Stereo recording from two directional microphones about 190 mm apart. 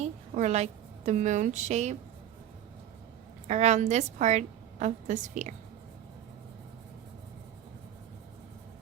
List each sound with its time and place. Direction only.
0.0 s a woman's voice: 35° right (ahead or behind)
3.4 s a woman's voice: 35° right (ahead or behind)